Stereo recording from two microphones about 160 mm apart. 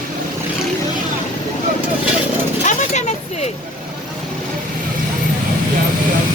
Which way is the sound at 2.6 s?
45° left (ahead or behind).